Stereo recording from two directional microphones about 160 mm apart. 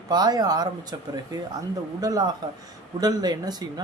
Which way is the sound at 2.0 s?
25° right (ahead or behind).